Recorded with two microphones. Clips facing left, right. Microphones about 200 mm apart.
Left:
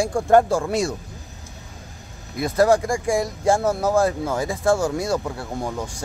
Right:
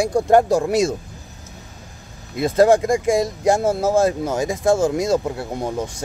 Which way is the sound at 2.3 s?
25° right (ahead or behind).